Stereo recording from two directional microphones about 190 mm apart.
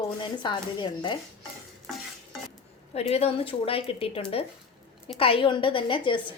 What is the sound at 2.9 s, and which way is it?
A woman's voice, 35° left (ahead or behind).